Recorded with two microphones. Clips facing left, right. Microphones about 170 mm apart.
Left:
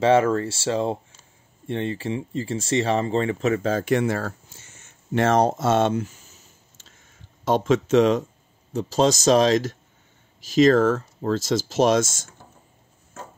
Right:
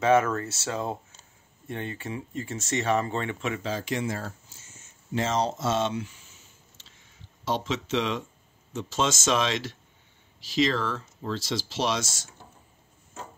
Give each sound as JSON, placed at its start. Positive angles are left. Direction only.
{"t": 0.0, "sound": "speech", "side_deg": 30}